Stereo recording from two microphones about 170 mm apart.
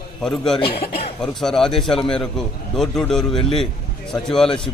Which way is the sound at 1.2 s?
Centre (ahead or behind).